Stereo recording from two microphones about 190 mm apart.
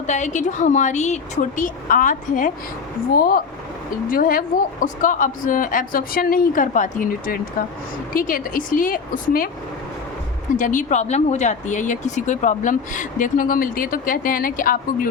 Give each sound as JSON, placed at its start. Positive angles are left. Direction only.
{"t": 0.1, "sound": "speech", "side_deg": 40}
{"t": 10.6, "sound": "speech", "side_deg": 45}